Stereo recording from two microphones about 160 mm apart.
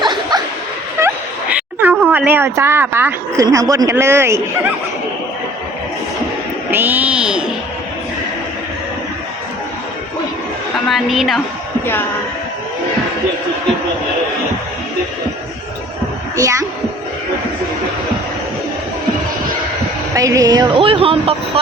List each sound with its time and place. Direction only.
0.0 s a sound: 25° right (ahead or behind)
1.8 s speech: 10° right (ahead or behind)
6.7 s speech: 10° right (ahead or behind)
10.8 s a woman's voice: centre (ahead or behind)
16.3 s a child's voice: 20° right (ahead or behind)
20.1 s speech: 20° right (ahead or behind); by 21.6 s 35° right (ahead or behind)